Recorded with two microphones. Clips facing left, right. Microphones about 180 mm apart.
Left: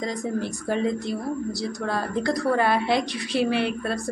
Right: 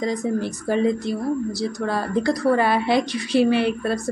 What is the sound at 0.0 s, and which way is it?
Speech, centre (ahead or behind).